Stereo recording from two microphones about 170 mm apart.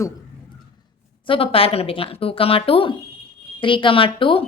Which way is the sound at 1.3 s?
35° left (ahead or behind).